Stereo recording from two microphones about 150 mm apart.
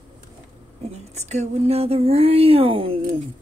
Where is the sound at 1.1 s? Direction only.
50° right (ahead or behind).